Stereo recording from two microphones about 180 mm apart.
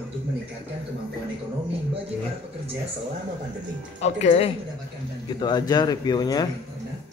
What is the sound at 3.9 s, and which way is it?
Speech, 35° left (ahead or behind).